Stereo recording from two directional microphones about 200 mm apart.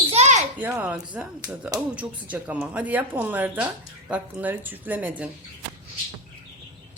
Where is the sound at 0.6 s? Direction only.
10° right (ahead or behind).